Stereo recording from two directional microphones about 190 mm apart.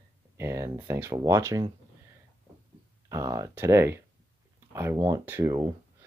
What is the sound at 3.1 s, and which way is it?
Speech, 15° right (ahead or behind).